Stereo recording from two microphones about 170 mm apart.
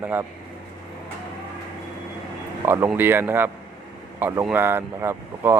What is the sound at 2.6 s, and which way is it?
Speech, 15° right (ahead or behind).